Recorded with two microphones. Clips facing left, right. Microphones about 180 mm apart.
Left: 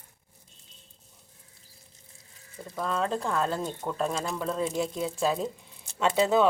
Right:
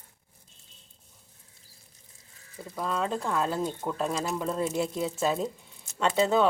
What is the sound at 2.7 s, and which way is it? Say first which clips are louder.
Speech: left 1 dB; centre (ahead or behind).